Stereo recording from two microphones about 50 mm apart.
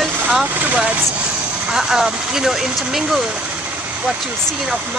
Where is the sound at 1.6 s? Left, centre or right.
Centre.